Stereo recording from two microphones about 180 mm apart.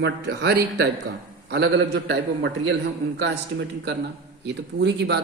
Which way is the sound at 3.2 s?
70° right (ahead or behind).